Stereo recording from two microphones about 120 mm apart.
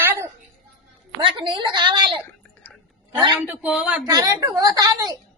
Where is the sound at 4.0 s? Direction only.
30° right (ahead or behind).